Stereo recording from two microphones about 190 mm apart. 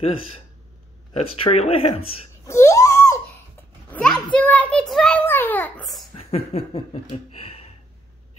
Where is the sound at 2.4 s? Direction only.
15° left (ahead or behind).